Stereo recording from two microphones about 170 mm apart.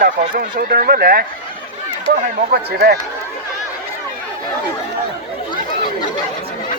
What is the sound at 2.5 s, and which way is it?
Speech, 70° right (ahead or behind).